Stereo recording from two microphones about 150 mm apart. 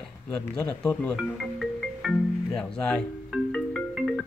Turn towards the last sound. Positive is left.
turn(degrees=5)  # may be behind; listen again after turning